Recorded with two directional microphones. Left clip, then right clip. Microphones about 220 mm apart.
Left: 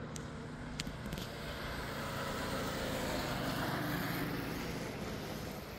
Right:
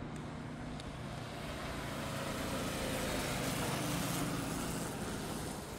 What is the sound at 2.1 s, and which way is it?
Vehicle, 5° left (ahead or behind).